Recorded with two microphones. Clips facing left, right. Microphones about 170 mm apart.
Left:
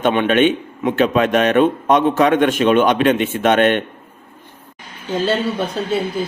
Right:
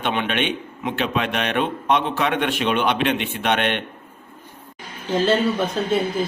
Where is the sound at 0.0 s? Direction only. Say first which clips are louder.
Left 9 dB; 45° left (ahead or behind).